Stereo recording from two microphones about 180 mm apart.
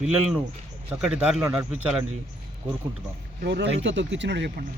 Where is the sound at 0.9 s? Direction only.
5° right (ahead or behind).